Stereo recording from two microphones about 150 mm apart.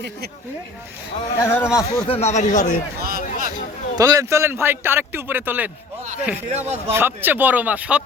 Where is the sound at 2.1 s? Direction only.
45° left (ahead or behind).